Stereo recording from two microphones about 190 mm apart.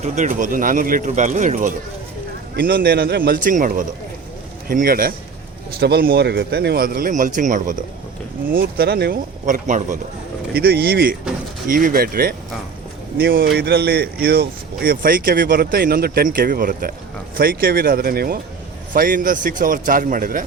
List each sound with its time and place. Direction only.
0.0 s speech: 40° right (ahead or behind)
2.6 s speech: 50° right (ahead or behind)
9.6 s a man's voice: 40° right (ahead or behind)
10.5 s speech: 55° right (ahead or behind)